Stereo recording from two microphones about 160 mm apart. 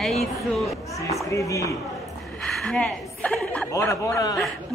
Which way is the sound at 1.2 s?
20° left (ahead or behind).